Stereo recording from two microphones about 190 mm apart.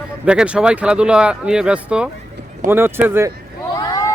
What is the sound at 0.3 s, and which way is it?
Speech, 5° right (ahead or behind).